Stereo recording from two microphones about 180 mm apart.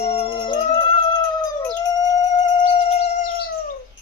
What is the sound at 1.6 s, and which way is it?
Howl, 20° left (ahead or behind).